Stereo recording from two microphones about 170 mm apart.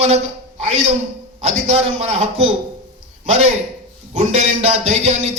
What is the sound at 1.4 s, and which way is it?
A man's voice, 40° right (ahead or behind).